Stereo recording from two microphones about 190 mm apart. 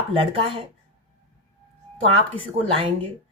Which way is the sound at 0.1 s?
30° right (ahead or behind).